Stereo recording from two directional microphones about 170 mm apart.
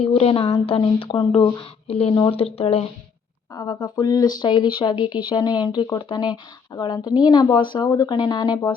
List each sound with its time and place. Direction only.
0.0 s speech: 35° left (ahead or behind)
3.5 s a woman's voice: 20° left (ahead or behind)